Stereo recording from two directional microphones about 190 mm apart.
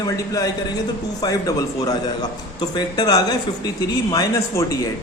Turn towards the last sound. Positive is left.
turn(degrees=20)  # may be behind; listen again after turning